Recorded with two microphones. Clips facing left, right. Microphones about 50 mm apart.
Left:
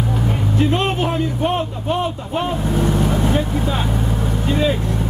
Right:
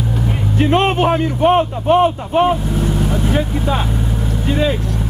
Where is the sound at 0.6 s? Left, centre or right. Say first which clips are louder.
Right 5 dB; right.